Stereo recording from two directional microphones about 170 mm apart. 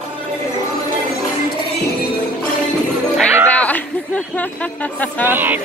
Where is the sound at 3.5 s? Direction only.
10° left (ahead or behind).